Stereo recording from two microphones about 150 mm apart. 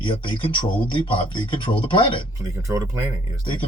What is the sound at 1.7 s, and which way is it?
Speech, 35° left (ahead or behind).